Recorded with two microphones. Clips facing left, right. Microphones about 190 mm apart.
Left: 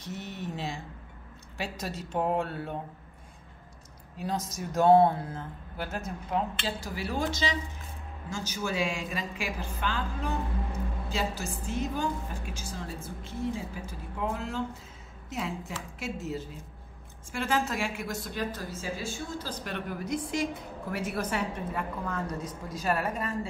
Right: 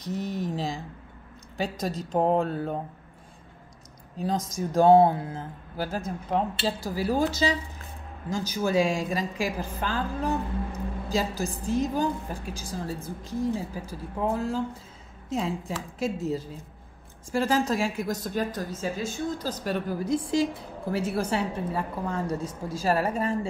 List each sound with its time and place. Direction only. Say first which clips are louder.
0.0 s a woman's voice: right 7 dB; 35° right (ahead or behind)
4.5 s a woman's voice: right 3 dB; 30° right (ahead or behind)